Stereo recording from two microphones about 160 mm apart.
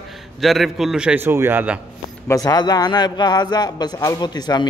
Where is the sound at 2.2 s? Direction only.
25° left (ahead or behind).